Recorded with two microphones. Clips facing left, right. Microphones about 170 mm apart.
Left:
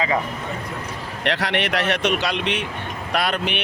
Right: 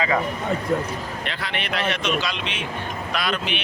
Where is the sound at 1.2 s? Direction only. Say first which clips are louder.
Left 7 dB; 75° left (ahead or behind).